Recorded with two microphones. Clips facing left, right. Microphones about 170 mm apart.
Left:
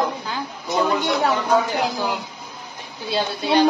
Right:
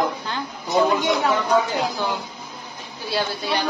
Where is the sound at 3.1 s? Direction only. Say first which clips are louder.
Left 4 dB; 20° left (ahead or behind).